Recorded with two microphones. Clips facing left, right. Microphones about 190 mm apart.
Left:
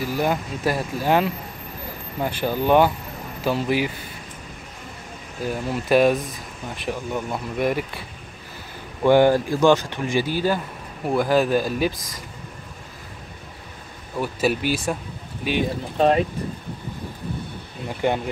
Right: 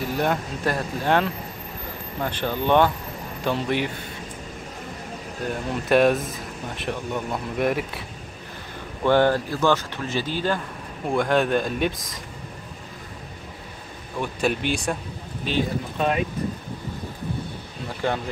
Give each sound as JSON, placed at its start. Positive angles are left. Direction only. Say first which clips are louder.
{"t": 0.0, "sound": "speech", "louder": "left 1 dB", "side_deg": 5}
{"t": 5.4, "sound": "speech", "louder": "left 2 dB", "side_deg": 5}
{"t": 9.0, "sound": "speech", "louder": "left 3 dB", "side_deg": 10}
{"t": 14.2, "sound": "speech", "louder": "left 2 dB", "side_deg": 5}
{"t": 16.0, "sound": "speech", "louder": "left 6 dB", "side_deg": 35}
{"t": 17.8, "sound": "speech", "louder": "left 3 dB", "side_deg": 15}